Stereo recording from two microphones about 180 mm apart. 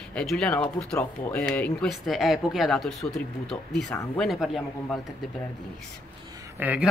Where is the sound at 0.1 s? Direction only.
5° left (ahead or behind).